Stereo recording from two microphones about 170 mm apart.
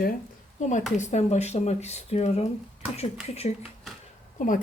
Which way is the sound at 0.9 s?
40° left (ahead or behind).